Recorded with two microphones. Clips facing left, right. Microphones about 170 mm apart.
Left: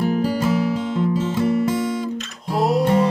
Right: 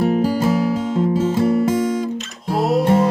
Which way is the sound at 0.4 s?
45° right (ahead or behind).